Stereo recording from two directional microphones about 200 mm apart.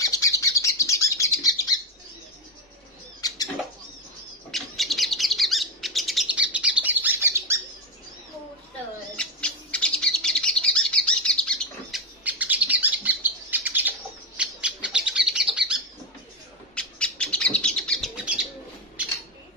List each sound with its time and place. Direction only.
0.0 s bird: 15° left (ahead or behind)
3.2 s a sound: 20° left (ahead or behind)
4.5 s bird: centre (ahead or behind)
9.1 s bird: 5° left (ahead or behind)
12.3 s bird: 10° right (ahead or behind)
18.1 s bird: 5° right (ahead or behind)